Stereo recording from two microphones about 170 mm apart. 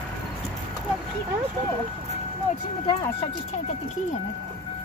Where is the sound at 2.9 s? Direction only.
30° left (ahead or behind).